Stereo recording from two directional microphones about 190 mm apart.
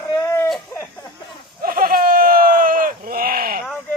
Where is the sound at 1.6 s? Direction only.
50° right (ahead or behind).